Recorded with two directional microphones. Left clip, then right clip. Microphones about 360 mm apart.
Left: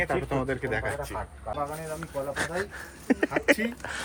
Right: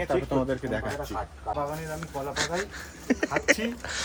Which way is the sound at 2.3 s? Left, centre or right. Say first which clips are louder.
Right 2 dB; centre.